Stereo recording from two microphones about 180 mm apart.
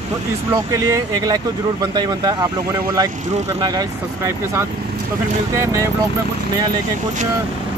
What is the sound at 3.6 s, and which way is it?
Speech, 20° right (ahead or behind).